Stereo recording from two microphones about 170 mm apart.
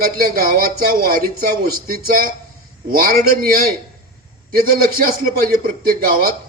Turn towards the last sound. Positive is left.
turn(degrees=-60)  # may be behind; listen again after turning